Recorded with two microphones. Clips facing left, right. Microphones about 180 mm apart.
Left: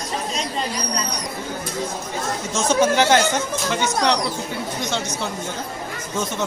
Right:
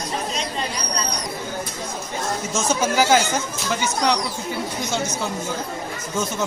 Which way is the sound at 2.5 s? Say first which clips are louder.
Left 5 dB; 5° right (ahead or behind).